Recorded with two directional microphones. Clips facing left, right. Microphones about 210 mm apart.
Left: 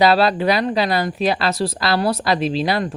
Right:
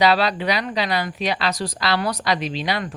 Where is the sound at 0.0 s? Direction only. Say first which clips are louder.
Left 4 dB; 45° left (ahead or behind).